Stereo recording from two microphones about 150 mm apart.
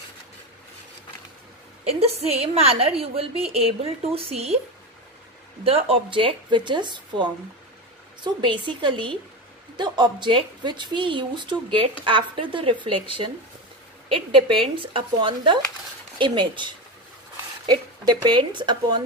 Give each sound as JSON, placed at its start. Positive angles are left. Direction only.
{"t": 1.9, "sound": "a woman's voice", "side_deg": -45}
{"t": 5.6, "sound": "a woman's voice", "side_deg": -40}